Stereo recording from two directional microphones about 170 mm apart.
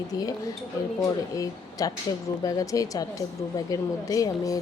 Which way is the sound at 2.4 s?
20° left (ahead or behind).